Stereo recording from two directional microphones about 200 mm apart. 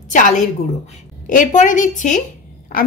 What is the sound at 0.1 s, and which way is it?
A woman's voice, 40° left (ahead or behind).